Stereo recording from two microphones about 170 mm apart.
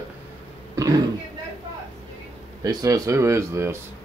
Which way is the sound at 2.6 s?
20° right (ahead or behind).